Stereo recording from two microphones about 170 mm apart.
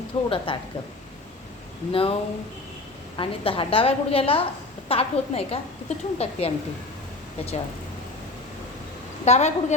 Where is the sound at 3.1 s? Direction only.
30° left (ahead or behind).